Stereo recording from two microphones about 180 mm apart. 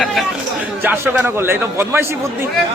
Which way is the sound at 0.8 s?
10° right (ahead or behind).